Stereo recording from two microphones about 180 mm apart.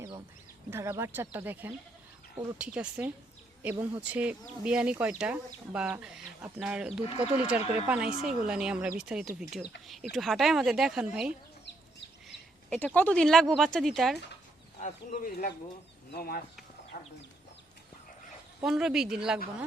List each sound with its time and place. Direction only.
0.7 s speech: 15° right (ahead or behind)
12.7 s speech: 10° left (ahead or behind)
14.8 s speech: 40° left (ahead or behind)
18.6 s speech: centre (ahead or behind)